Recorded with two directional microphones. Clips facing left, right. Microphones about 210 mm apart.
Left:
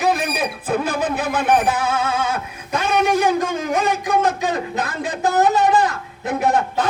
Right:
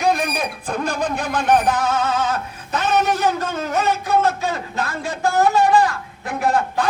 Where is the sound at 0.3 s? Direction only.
5° left (ahead or behind).